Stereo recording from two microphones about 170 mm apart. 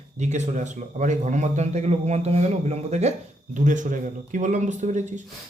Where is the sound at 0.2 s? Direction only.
45° right (ahead or behind).